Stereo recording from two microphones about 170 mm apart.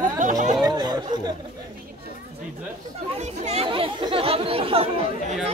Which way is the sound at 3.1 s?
40° right (ahead or behind).